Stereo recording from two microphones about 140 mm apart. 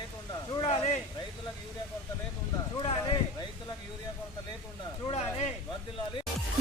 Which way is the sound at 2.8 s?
40° left (ahead or behind).